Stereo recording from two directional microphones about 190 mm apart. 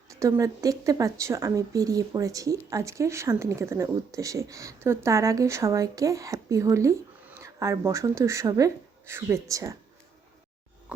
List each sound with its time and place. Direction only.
0.2 s speech: 15° right (ahead or behind)